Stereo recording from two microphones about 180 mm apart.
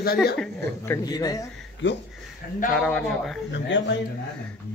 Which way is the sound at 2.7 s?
5° left (ahead or behind).